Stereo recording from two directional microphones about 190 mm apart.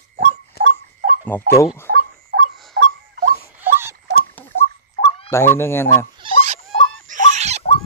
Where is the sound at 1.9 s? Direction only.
60° right (ahead or behind).